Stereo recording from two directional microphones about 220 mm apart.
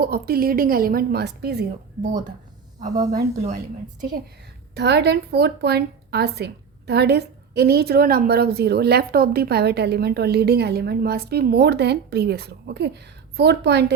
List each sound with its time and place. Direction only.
0.0 s a woman's voice: 45° right (ahead or behind)
2.9 s a woman's voice: 15° right (ahead or behind)
4.7 s a woman's voice: 50° right (ahead or behind)